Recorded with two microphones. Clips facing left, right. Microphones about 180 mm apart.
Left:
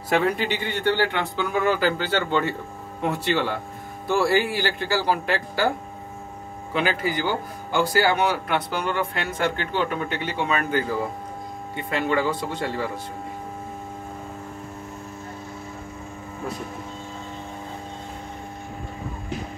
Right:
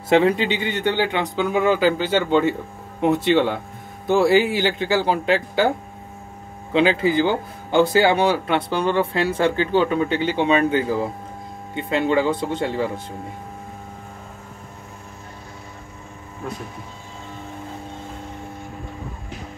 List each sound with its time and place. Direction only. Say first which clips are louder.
0.1 s a man's voice: right 5 dB; 25° right (ahead or behind)
6.7 s speech: right 7 dB; 25° right (ahead or behind)